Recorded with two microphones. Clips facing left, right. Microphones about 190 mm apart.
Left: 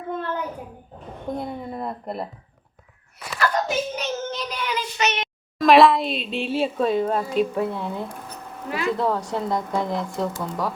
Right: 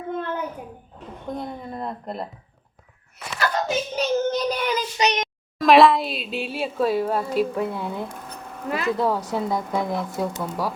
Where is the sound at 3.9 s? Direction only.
35° right (ahead or behind).